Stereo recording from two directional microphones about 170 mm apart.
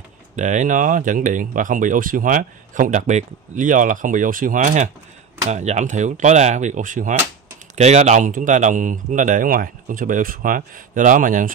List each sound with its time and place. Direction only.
0.4 s speech: 45° right (ahead or behind)